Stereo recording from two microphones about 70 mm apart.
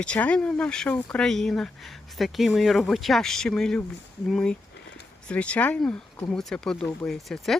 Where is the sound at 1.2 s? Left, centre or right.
Centre.